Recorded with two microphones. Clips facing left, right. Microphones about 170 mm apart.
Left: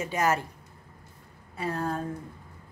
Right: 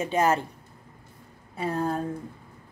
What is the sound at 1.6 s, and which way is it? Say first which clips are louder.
Speech: right 3 dB; 30° right (ahead or behind).